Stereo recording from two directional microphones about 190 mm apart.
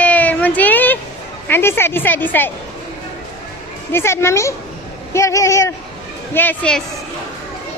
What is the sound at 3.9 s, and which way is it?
Speech, 15° left (ahead or behind).